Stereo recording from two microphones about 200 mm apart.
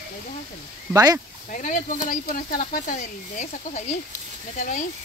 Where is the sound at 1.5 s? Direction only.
40° left (ahead or behind).